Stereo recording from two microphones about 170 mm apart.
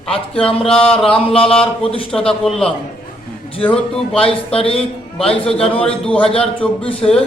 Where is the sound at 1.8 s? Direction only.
35° left (ahead or behind).